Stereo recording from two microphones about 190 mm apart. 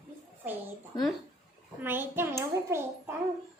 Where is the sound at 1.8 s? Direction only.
10° right (ahead or behind).